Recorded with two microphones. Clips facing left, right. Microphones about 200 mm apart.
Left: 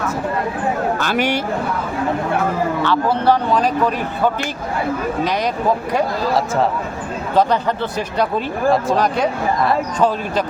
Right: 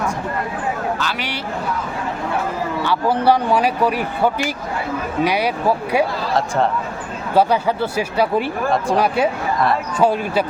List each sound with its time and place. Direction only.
0.9 s speech: 50° left (ahead or behind)
2.8 s speech: 10° right (ahead or behind)
5.2 s speech: 10° right (ahead or behind)
7.3 s speech: 10° right (ahead or behind)